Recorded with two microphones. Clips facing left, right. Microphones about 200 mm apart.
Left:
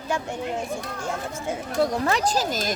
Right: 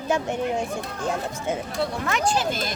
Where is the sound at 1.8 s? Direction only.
35° left (ahead or behind).